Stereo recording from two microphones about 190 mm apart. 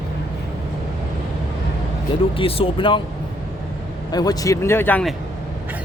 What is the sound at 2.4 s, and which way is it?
Speech, 30° left (ahead or behind).